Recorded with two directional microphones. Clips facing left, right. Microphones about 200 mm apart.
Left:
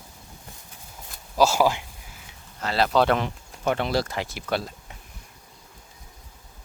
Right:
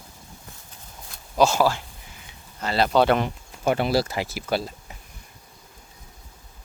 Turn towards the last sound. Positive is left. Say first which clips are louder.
# right 2 dB
turn(degrees=0)  # may be behind; listen again after turning